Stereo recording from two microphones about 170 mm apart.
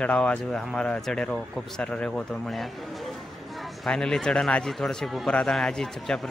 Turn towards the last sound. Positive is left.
turn(degrees=5)  # may be behind; listen again after turning